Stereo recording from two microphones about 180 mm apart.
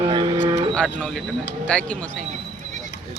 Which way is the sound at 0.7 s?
5° left (ahead or behind).